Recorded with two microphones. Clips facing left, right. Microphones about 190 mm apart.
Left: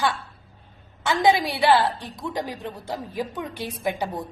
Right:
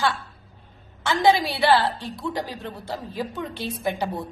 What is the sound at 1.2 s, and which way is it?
A woman's voice, 20° left (ahead or behind).